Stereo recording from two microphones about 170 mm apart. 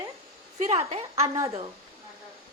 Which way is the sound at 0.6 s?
40° right (ahead or behind).